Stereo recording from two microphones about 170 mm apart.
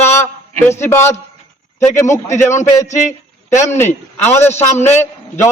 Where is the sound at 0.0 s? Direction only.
15° left (ahead or behind).